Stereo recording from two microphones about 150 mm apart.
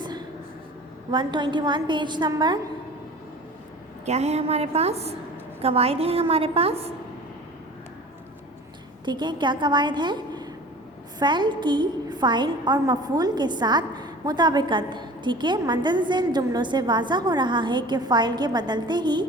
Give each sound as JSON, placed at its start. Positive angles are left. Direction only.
{"t": 1.1, "sound": "a woman's voice", "side_deg": -30}
{"t": 4.0, "sound": "a woman's voice", "side_deg": -45}
{"t": 9.0, "sound": "a woman's voice", "side_deg": -30}